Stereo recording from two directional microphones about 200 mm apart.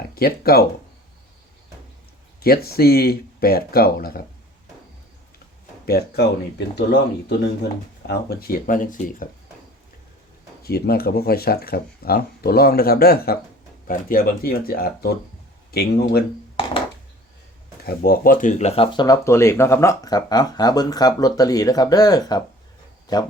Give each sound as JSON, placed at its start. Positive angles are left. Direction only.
{"t": 0.1, "sound": "speech", "side_deg": 50}
{"t": 2.4, "sound": "speech", "side_deg": 50}
{"t": 5.8, "sound": "speech", "side_deg": 50}
{"t": 10.6, "sound": "speech", "side_deg": 50}
{"t": 17.8, "sound": "speech", "side_deg": 50}
{"t": 18.9, "sound": "speech", "side_deg": 20}